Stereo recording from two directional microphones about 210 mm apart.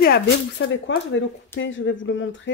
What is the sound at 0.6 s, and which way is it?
Speech, 60° left (ahead or behind).